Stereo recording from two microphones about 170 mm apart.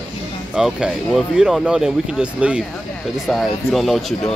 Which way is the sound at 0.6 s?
5° right (ahead or behind).